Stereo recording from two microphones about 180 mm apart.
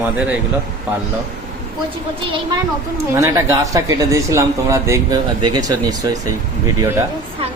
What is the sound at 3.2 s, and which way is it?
Speech, 15° right (ahead or behind).